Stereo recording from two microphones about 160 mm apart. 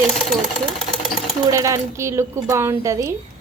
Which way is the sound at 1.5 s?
20° right (ahead or behind).